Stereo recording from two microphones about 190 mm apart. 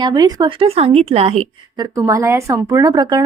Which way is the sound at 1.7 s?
15° right (ahead or behind).